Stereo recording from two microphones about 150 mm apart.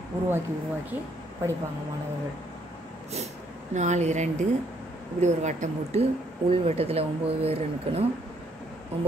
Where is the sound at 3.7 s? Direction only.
50° right (ahead or behind).